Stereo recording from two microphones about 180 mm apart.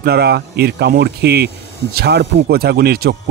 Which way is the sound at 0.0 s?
60° right (ahead or behind).